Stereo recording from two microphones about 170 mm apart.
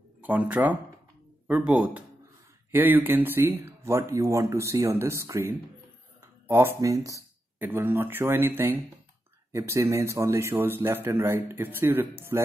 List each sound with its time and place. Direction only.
0.2 s speech: 10° right (ahead or behind)